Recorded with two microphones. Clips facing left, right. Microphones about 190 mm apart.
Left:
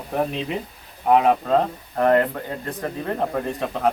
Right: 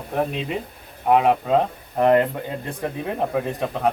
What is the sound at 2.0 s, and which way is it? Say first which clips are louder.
Speech: right 1 dB; 15° right (ahead or behind).